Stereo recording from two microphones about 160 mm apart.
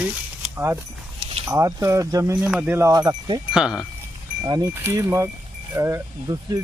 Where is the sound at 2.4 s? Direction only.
5° right (ahead or behind); by 3.4 s 25° right (ahead or behind).